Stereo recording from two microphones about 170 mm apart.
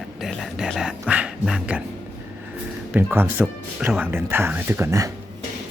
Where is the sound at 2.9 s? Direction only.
10° right (ahead or behind).